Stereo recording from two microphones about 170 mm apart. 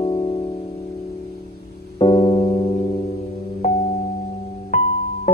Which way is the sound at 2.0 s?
35° left (ahead or behind).